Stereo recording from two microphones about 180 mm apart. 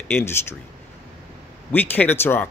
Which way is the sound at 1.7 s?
10° left (ahead or behind).